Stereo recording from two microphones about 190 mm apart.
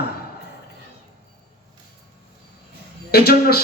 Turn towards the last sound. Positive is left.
turn(degrees=55)  # may be behind; listen again after turning